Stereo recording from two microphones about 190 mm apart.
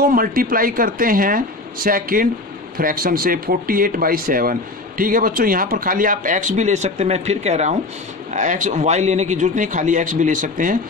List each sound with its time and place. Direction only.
0.0 s a man's voice: 50° right (ahead or behind)